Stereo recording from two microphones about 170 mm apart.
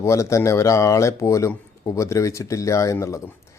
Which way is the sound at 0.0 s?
20° left (ahead or behind).